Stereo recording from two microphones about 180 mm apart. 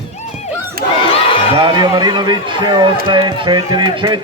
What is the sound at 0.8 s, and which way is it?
Crowd, 55° right (ahead or behind).